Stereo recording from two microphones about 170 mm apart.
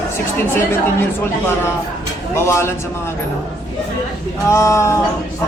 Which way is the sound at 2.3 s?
15° left (ahead or behind).